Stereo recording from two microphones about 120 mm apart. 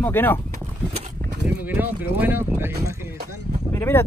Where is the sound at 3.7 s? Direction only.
20° left (ahead or behind).